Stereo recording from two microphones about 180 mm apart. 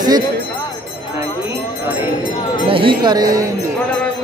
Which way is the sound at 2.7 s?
30° right (ahead or behind).